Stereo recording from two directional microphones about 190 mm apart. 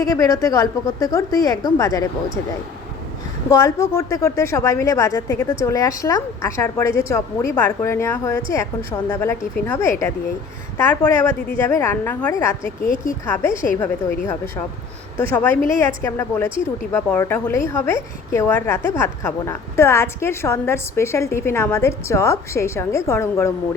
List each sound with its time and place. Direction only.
0.0 s a woman's voice: 15° left (ahead or behind)
3.5 s a woman's voice: 15° left (ahead or behind)